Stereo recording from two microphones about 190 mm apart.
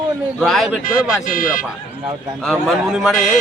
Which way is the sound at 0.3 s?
Centre (ahead or behind).